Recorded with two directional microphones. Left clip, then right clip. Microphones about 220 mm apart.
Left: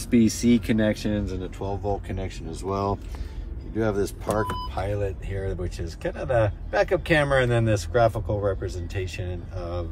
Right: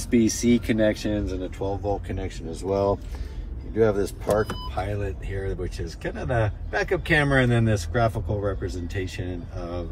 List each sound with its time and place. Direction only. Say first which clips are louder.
0.1 s speech: even; 25° left (ahead or behind)
1.7 s speech: even; 45° left (ahead or behind)
2.0 s speech: right 1 dB; 25° left (ahead or behind)
2.6 s speech: right 3 dB; 35° left (ahead or behind)
3.7 s speech: right 4 dB; 20° left (ahead or behind)